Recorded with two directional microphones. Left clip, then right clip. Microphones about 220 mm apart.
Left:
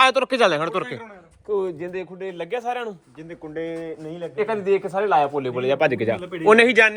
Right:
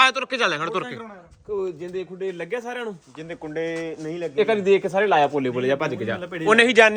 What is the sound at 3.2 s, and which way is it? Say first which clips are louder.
Speech: right 4 dB; 45° right (ahead or behind).